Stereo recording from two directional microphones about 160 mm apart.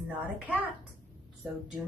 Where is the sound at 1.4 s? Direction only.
5° right (ahead or behind).